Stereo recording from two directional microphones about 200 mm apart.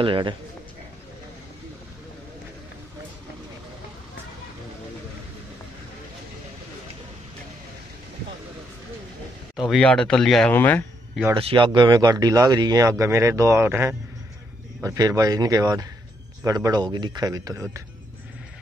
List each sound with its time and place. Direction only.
0.0 s speech: 25° right (ahead or behind)
9.6 s speech: centre (ahead or behind)
11.3 s speech: 25° right (ahead or behind)